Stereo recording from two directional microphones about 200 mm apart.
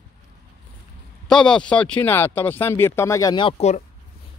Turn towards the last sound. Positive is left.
turn(degrees=30)  # may be behind; listen again after turning